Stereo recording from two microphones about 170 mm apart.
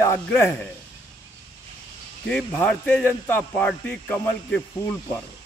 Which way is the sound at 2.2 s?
5° left (ahead or behind).